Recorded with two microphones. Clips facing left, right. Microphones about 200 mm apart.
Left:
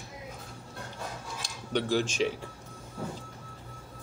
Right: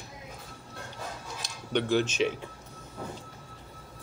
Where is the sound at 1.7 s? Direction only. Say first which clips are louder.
Right 2 dB; 5° left (ahead or behind).